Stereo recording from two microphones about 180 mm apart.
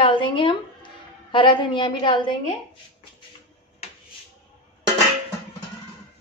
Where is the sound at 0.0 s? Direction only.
30° left (ahead or behind).